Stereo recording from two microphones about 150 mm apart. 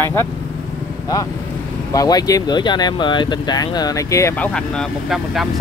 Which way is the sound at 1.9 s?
25° left (ahead or behind).